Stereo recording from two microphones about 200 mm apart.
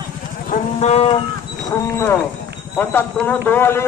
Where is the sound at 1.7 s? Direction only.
15° left (ahead or behind).